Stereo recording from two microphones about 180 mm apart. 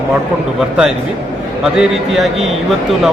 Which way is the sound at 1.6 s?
Centre (ahead or behind).